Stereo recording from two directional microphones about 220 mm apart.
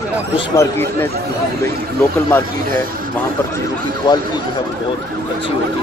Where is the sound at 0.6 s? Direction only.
10° left (ahead or behind).